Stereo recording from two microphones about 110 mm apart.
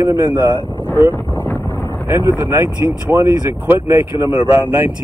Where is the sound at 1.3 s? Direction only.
15° left (ahead or behind).